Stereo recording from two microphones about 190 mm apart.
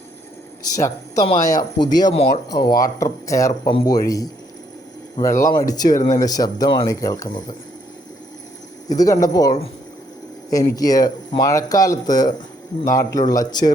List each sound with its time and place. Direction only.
0.7 s speech: 20° left (ahead or behind)
8.9 s speech: 20° left (ahead or behind)